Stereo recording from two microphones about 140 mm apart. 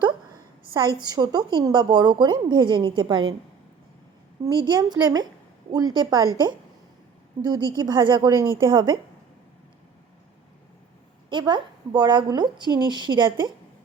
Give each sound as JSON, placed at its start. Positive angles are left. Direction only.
{"t": 0.7, "sound": "a woman's voice", "side_deg": -35}
{"t": 4.4, "sound": "a woman's voice", "side_deg": -30}
{"t": 7.4, "sound": "a woman's voice", "side_deg": -30}
{"t": 11.3, "sound": "a woman's voice", "side_deg": -35}